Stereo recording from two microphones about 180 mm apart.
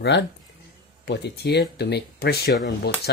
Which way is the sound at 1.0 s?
65° left (ahead or behind).